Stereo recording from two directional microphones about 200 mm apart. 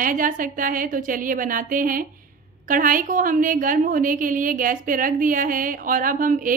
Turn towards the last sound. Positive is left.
turn(degrees=-45)  # may be behind; listen again after turning